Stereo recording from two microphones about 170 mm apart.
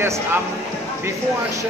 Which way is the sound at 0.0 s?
15° right (ahead or behind).